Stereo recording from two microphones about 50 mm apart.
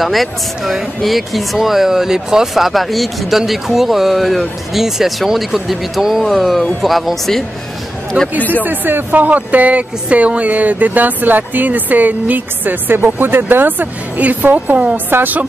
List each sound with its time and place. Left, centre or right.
0.0 s speech: centre
8.4 s speech: left
8.6 s speech: right